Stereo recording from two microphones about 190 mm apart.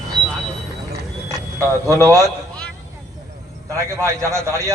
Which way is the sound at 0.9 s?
15° right (ahead or behind).